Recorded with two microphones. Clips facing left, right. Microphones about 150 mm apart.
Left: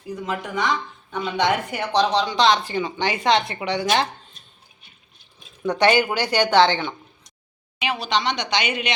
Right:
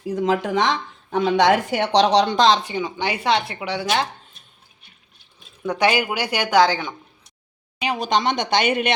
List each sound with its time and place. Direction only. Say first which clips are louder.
0.0 s speech: right 7 dB; 90° right
2.7 s speech: left 1 dB; 5° right (ahead or behind)
5.6 s speech: left 2 dB; 10° right (ahead or behind)
6.7 s a sound: even; 5° right (ahead or behind)
7.8 s speech: right 3 dB; 45° right (ahead or behind)